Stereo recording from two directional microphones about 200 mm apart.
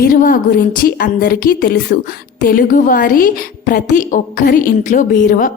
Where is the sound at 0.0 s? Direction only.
45° left (ahead or behind).